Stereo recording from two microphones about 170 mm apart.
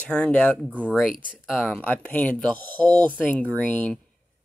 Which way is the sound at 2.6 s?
25° right (ahead or behind).